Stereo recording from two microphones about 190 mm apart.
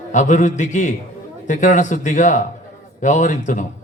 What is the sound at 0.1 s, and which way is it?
A man's voice, 40° left (ahead or behind).